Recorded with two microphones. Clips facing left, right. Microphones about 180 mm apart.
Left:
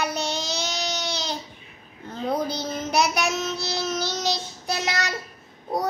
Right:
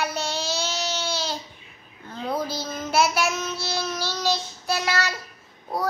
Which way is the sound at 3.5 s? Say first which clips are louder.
Left 1 dB; 20° left (ahead or behind).